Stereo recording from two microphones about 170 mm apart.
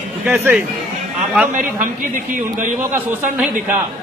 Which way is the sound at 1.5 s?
50° right (ahead or behind).